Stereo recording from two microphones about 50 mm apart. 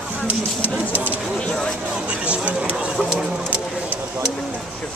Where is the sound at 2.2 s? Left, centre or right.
Right.